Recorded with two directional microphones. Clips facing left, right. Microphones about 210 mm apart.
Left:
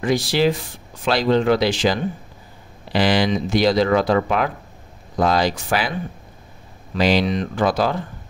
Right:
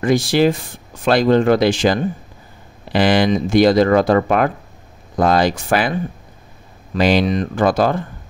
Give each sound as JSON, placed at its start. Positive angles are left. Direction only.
{"t": 0.0, "sound": "speech", "side_deg": -50}
{"t": 7.0, "sound": "speech", "side_deg": -50}